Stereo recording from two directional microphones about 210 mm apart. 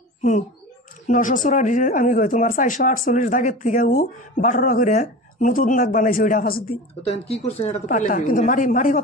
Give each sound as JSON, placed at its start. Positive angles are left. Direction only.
{"t": 1.0, "sound": "speech", "side_deg": 35}
{"t": 7.1, "sound": "speech", "side_deg": 30}